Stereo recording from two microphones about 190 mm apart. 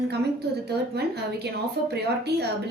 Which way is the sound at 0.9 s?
60° right (ahead or behind).